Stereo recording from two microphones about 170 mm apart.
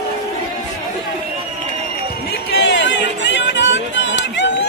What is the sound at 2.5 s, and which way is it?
Run, 85° left.